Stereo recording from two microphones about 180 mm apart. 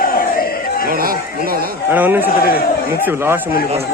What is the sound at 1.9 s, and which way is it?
Speech, 10° right (ahead or behind).